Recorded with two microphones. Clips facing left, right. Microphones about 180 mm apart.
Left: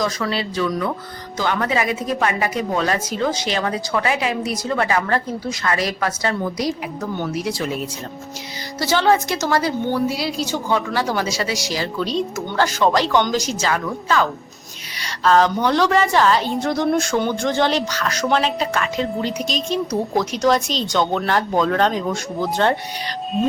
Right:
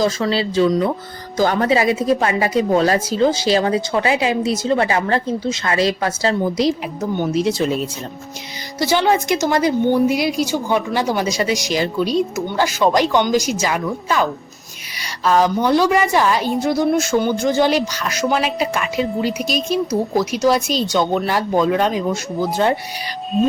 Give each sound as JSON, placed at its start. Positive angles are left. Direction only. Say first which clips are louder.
{"t": 0.0, "sound": "a woman's voice", "louder": "right 4 dB", "side_deg": -30}
{"t": 8.8, "sound": "a woman's voice", "louder": "right 1 dB", "side_deg": -15}